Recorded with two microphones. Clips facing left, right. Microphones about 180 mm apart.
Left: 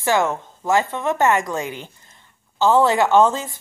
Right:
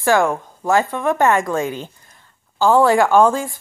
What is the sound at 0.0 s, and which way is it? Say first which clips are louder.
A woman's voice: right 3 dB; 20° left (ahead or behind).